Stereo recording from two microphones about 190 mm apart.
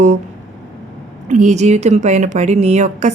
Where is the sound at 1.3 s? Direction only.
40° right (ahead or behind).